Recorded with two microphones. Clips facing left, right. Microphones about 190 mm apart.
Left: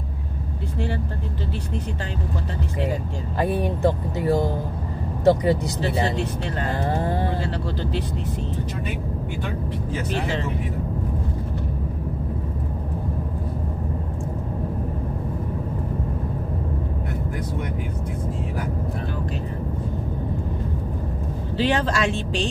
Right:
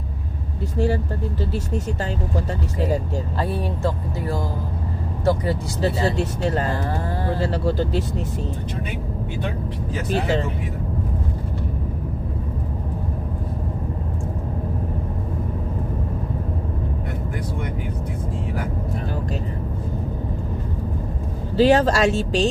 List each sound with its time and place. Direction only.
3.3 s speech: 15° left (ahead or behind)
6.1 s speech: 40° right (ahead or behind)
21.5 s speech: 40° right (ahead or behind)